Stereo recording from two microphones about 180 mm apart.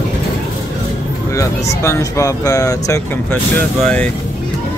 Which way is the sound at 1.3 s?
15° left (ahead or behind).